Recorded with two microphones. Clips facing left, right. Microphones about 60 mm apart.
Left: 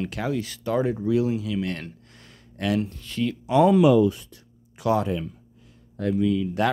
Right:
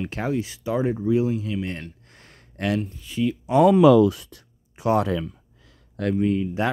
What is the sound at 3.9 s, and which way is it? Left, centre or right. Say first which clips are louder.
Speech: right 3 dB; right.